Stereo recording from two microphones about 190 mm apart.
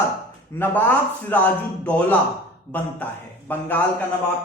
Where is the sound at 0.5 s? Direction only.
10° left (ahead or behind).